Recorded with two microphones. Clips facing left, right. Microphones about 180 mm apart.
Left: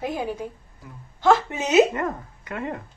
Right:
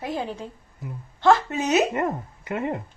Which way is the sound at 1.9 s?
25° right (ahead or behind).